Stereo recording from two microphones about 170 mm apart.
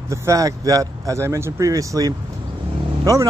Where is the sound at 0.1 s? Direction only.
15° right (ahead or behind).